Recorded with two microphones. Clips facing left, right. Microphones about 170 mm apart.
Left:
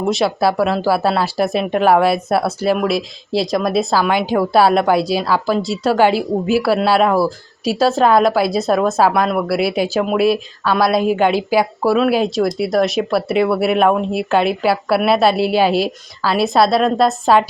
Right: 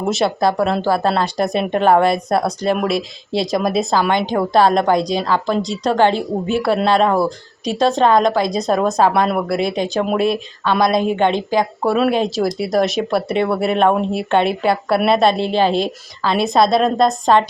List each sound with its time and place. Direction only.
0.0 s speech: centre (ahead or behind)